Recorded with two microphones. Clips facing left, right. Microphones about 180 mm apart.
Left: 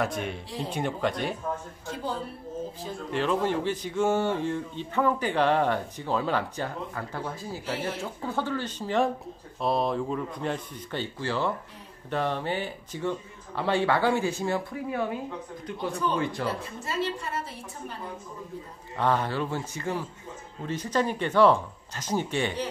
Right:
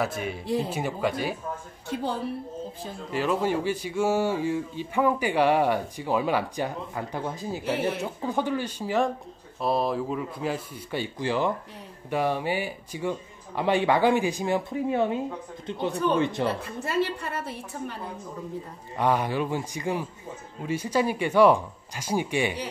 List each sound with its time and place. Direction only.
0.0 s a man's voice: 5° right (ahead or behind)
3.1 s a man's voice: 5° right (ahead or behind); by 15.1 s 25° right (ahead or behind)
16.2 s speech: 20° right (ahead or behind)
16.8 s a woman's voice: 60° right (ahead or behind)
18.9 s speech: 15° right (ahead or behind)